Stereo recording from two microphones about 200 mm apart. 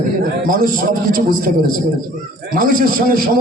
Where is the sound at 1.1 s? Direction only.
45° right (ahead or behind).